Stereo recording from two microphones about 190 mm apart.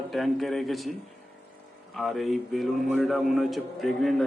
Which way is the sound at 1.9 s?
Centre (ahead or behind).